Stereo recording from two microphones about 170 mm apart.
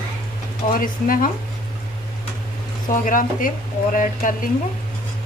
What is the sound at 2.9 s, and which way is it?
A woman's voice, 50° left (ahead or behind).